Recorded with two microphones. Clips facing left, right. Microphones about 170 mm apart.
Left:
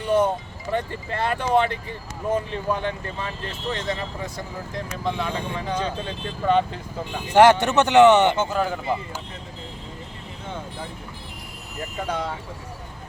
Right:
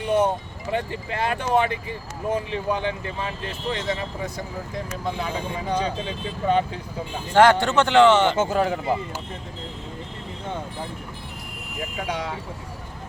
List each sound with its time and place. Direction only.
0.7 s speech: 15° right (ahead or behind)
5.0 s speech: 5° right (ahead or behind)
7.3 s speech: 20° left (ahead or behind)
8.5 s speech: 30° right (ahead or behind)